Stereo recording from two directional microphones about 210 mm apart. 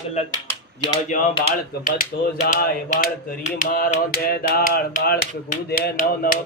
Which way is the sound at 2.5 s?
45° left (ahead or behind).